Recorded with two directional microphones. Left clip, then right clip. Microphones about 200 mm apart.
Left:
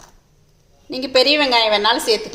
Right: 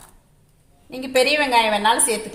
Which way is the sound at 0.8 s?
45° left (ahead or behind).